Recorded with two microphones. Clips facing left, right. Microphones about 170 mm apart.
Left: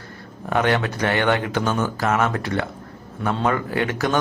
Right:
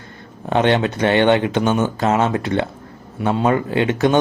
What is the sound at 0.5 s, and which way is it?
Speech, 25° right (ahead or behind).